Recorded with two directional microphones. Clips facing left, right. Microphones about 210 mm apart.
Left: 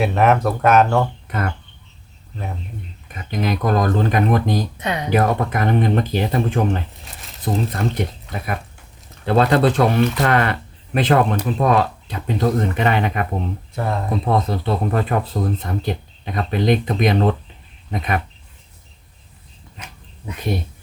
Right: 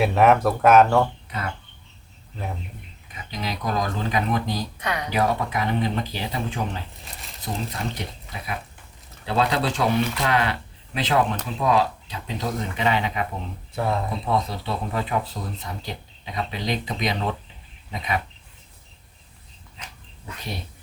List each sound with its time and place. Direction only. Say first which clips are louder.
0.0 s speech: left 1 dB; centre (ahead or behind)
1.3 s speech: left 6 dB; 55° left (ahead or behind)
3.1 s speech: left 9 dB; 55° left (ahead or behind)
4.8 s speech: left 5 dB; 25° left (ahead or behind)
5.1 s speech: left 5 dB; 55° left (ahead or behind)
7.1 s crumpling: left 1 dB; centre (ahead or behind)
7.4 s speech: left 8 dB; 55° left (ahead or behind)
13.7 s speech: even; centre (ahead or behind)
14.3 s speech: left 6 dB; 50° left (ahead or behind)